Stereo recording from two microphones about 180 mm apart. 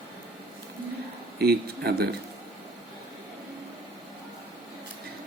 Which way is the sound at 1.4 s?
60° right (ahead or behind).